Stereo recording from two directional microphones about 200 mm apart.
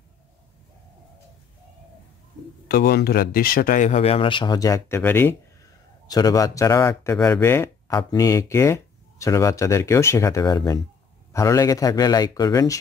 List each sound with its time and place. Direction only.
2.7 s speech: 50° left (ahead or behind); by 12.7 s 20° left (ahead or behind)